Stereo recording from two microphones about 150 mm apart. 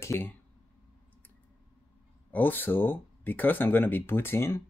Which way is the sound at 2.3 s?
10° left (ahead or behind).